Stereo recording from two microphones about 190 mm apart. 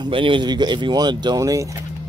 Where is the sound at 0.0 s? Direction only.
25° right (ahead or behind).